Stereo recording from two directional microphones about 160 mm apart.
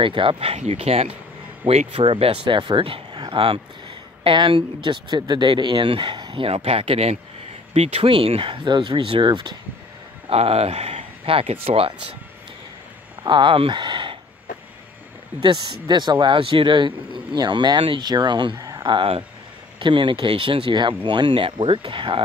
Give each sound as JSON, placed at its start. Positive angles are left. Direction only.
{"t": 0.0, "sound": "speech", "side_deg": -35}
{"t": 10.3, "sound": "speech", "side_deg": -40}
{"t": 13.2, "sound": "speech", "side_deg": -30}
{"t": 15.4, "sound": "speech", "side_deg": -30}